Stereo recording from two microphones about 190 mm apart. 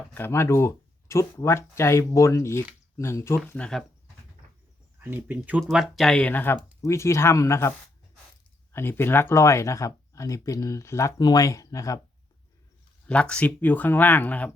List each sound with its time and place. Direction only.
0.1 s speech: 10° left (ahead or behind)
4.9 s speech: 10° right (ahead or behind); by 7.7 s 15° left (ahead or behind)
8.7 s speech: 10° left (ahead or behind)
13.1 s speech: 5° left (ahead or behind)